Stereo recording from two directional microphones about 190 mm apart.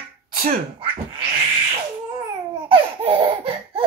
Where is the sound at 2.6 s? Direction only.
30° right (ahead or behind).